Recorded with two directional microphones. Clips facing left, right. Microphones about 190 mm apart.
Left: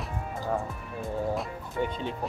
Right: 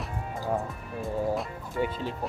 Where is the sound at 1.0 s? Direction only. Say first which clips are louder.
Right 1 dB; centre (ahead or behind).